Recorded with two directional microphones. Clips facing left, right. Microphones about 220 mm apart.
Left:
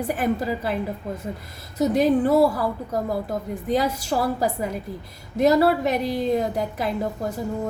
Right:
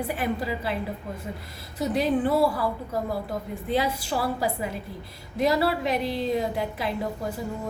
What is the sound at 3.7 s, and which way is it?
A woman's voice, 40° left (ahead or behind).